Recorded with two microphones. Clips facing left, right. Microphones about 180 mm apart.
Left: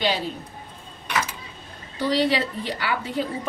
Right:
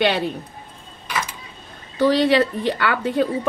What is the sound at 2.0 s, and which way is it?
A woman's voice, 65° right (ahead or behind).